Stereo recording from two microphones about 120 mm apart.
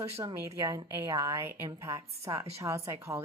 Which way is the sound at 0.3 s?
40° right (ahead or behind).